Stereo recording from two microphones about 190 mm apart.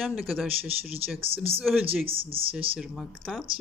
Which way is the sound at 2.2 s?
30° right (ahead or behind).